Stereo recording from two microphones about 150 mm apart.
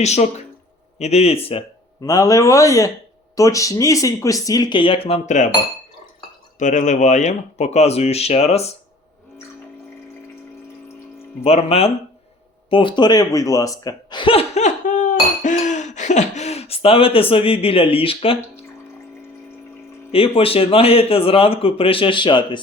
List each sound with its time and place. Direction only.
0.0 s speech: 45° left (ahead or behind)
2.0 s speech: 25° left (ahead or behind); by 5.5 s 50° left (ahead or behind)
6.6 s speech: 55° left (ahead or behind)
11.4 s speech: 40° left (ahead or behind)
20.1 s speech: 40° left (ahead or behind)